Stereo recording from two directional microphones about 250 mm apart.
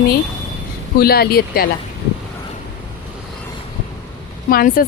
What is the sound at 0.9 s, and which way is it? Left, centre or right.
Speech, left.